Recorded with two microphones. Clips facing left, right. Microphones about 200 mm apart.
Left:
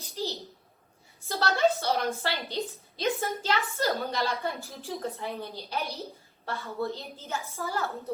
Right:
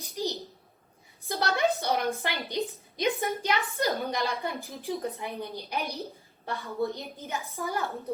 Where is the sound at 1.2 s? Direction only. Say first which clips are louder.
Left 2 dB; 15° right (ahead or behind).